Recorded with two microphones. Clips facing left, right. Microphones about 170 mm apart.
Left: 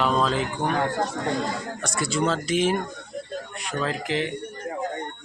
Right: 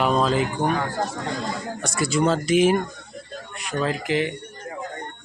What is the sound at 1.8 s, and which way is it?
Speech, 5° right (ahead or behind).